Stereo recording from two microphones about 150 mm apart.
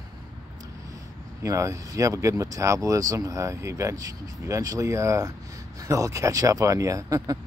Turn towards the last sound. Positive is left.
turn(degrees=-20)  # may be behind; listen again after turning